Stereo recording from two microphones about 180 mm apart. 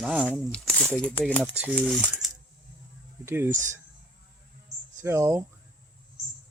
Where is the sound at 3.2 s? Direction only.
15° right (ahead or behind).